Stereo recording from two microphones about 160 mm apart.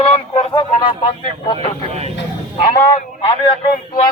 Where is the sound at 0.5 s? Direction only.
30° left (ahead or behind).